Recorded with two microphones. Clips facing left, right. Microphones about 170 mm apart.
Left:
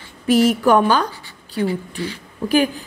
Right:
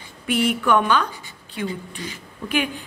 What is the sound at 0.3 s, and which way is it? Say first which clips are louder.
Speech: left 6 dB; 35° left (ahead or behind).